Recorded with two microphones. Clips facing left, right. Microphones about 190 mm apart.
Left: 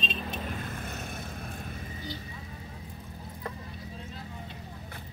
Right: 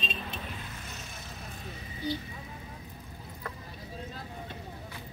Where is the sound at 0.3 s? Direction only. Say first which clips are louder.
Left 5 dB; 50° left (ahead or behind).